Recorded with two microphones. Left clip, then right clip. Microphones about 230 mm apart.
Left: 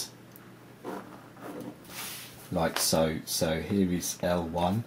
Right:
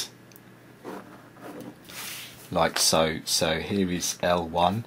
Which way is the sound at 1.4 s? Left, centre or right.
Centre.